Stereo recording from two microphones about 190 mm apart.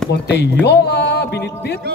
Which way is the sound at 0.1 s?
60° left (ahead or behind).